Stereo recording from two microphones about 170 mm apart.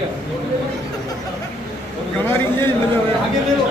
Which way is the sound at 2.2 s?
15° left (ahead or behind).